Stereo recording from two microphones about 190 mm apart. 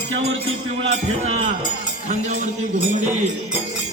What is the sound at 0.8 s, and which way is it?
Music, 35° right (ahead or behind).